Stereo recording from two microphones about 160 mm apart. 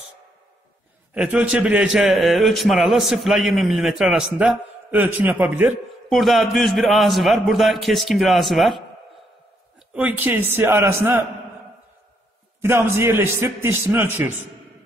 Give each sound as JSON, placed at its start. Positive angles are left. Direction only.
{"t": 1.1, "sound": "a man's voice", "side_deg": -10}
{"t": 6.0, "sound": "a man's voice", "side_deg": 0}
{"t": 9.9, "sound": "a man's voice", "side_deg": -10}
{"t": 12.6, "sound": "a man's voice", "side_deg": -15}